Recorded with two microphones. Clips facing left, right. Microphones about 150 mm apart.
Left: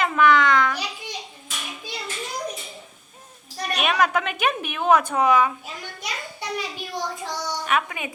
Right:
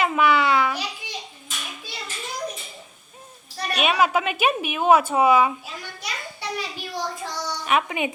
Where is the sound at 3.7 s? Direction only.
5° right (ahead or behind).